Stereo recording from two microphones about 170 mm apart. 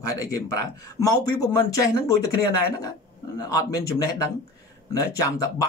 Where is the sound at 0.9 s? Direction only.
20° left (ahead or behind).